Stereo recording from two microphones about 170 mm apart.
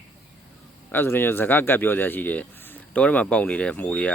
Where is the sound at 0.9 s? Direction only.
15° left (ahead or behind).